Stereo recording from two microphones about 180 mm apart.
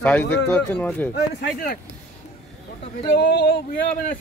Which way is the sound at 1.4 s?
50° left (ahead or behind).